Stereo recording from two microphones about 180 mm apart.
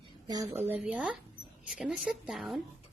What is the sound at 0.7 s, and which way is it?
A woman's voice, 5° right (ahead or behind).